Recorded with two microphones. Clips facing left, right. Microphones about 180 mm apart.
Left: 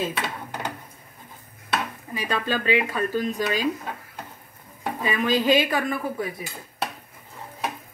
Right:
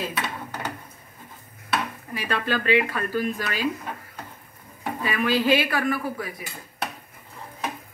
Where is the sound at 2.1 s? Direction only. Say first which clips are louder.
Even; 15° left (ahead or behind).